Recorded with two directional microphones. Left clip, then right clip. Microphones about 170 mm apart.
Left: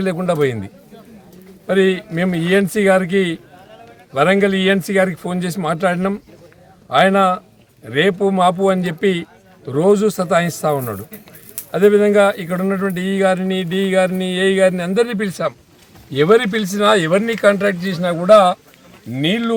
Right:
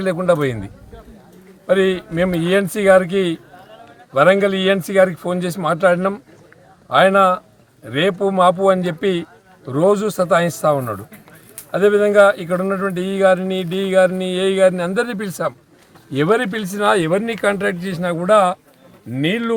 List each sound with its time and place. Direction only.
0.0 s speech: 5° right (ahead or behind)
1.6 s speech: 5° right (ahead or behind)
16.3 s speech: 40° right (ahead or behind)
19.2 s speech: 25° right (ahead or behind)